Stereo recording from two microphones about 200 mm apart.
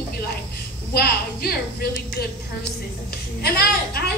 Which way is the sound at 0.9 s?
50° left (ahead or behind).